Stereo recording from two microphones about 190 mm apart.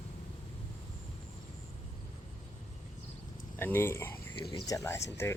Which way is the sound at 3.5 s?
10° left (ahead or behind).